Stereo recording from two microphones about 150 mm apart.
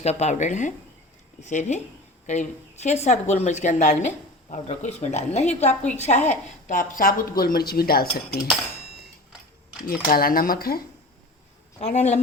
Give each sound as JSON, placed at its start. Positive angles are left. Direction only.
{"t": 0.0, "sound": "a woman's voice", "side_deg": 45}
{"t": 10.1, "sound": "speech", "side_deg": 75}
{"t": 11.8, "sound": "speech", "side_deg": 50}